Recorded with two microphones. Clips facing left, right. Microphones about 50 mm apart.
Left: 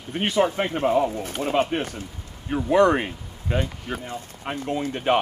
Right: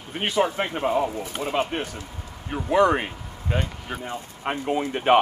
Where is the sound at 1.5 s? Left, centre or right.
Centre.